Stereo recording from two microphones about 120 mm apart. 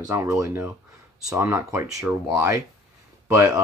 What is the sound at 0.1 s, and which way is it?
Speech, 25° right (ahead or behind).